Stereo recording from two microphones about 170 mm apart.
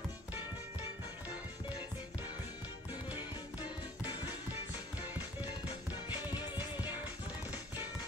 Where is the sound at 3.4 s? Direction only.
10° right (ahead or behind).